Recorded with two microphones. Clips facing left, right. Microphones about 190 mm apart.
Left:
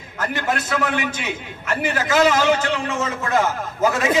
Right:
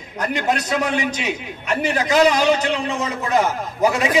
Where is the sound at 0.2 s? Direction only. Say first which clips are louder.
Right 2 dB; 20° right (ahead or behind).